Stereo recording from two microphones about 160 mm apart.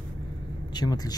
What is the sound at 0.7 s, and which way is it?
Speech, 25° left (ahead or behind).